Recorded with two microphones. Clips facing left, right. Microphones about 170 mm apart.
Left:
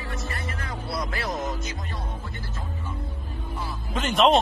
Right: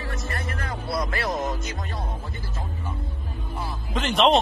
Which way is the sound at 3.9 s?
Centre (ahead or behind).